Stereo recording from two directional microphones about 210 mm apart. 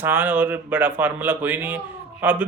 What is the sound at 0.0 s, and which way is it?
Speech, 10° right (ahead or behind).